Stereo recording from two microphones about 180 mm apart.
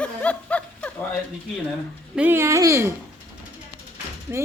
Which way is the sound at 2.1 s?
10° right (ahead or behind).